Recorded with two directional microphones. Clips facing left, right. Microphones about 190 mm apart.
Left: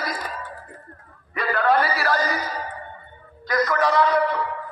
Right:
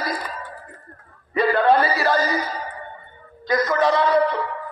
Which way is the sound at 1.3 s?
30° right (ahead or behind).